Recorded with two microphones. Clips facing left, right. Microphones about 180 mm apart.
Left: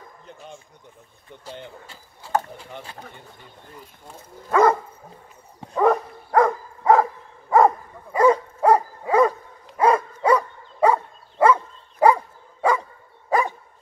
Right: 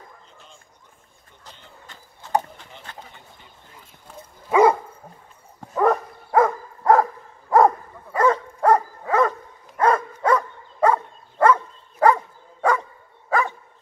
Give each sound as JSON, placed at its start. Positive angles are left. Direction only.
{"t": 4.5, "sound": "dog", "side_deg": -10}
{"t": 8.1, "sound": "dog", "side_deg": 10}
{"t": 13.3, "sound": "dog", "side_deg": 15}